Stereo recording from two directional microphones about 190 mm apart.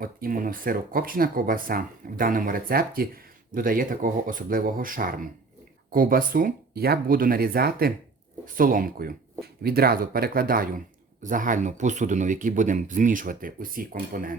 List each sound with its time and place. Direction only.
0.0 s speech: 50° right (ahead or behind)